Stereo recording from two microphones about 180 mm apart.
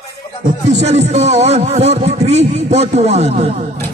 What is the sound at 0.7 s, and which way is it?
A man's voice, 35° right (ahead or behind).